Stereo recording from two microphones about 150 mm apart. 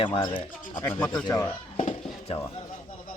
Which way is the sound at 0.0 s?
35° left (ahead or behind).